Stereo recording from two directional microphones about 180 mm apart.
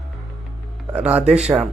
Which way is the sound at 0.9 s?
10° right (ahead or behind).